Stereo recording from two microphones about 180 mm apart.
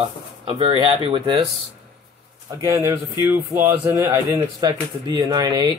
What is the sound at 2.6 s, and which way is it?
Speech, 15° right (ahead or behind).